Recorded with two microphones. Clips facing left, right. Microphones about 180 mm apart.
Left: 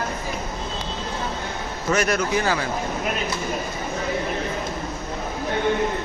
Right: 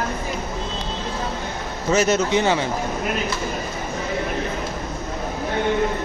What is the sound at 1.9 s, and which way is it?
Speech, 25° right (ahead or behind).